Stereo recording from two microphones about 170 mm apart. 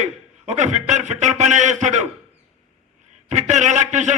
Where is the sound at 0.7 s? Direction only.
45° right (ahead or behind).